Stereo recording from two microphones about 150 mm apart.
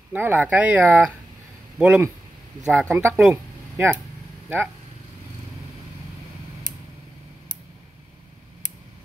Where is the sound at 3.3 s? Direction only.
15° right (ahead or behind).